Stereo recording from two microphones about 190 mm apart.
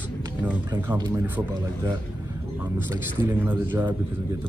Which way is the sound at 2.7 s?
10° right (ahead or behind).